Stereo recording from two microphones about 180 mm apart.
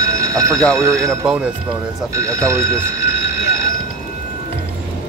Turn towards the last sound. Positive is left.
turn(degrees=-15)  # may be behind; listen again after turning